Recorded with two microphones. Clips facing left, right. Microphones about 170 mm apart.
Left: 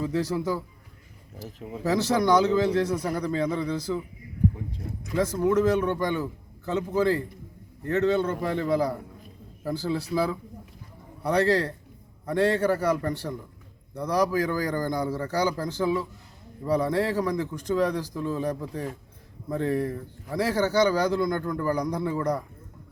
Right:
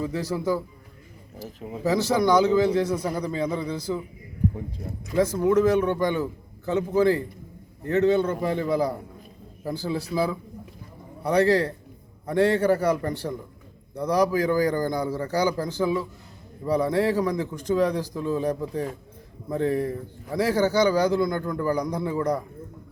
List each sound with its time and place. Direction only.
0.0 s a man's voice: 10° right (ahead or behind)
1.8 s a man's voice: 10° right (ahead or behind)
5.1 s a man's voice: 10° right (ahead or behind)